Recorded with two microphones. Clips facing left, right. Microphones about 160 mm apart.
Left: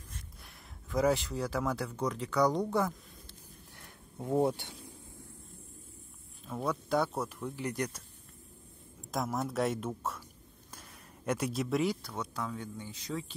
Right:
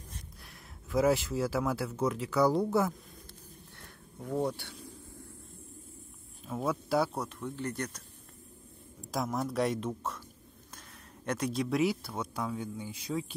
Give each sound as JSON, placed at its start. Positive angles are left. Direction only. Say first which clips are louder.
{"t": 0.4, "sound": "speech", "louder": "right 2 dB", "side_deg": 0}
{"t": 4.2, "sound": "speech", "louder": "left 3 dB", "side_deg": 25}
{"t": 6.4, "sound": "speech", "louder": "right 2 dB", "side_deg": -5}
{"t": 7.2, "sound": "speech", "louder": "even", "side_deg": 5}
{"t": 9.1, "sound": "speech", "louder": "right 1 dB", "side_deg": 0}
{"t": 11.2, "sound": "speech", "louder": "right 1 dB", "side_deg": 5}